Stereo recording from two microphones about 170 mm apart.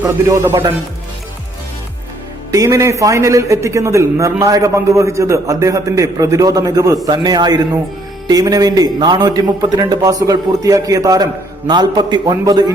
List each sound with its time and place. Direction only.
0.3 s speech: 15° right (ahead or behind)
2.5 s a man's voice: 20° right (ahead or behind)